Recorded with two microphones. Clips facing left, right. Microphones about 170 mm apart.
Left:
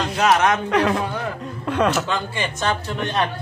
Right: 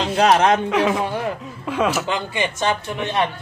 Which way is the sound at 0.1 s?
30° right (ahead or behind).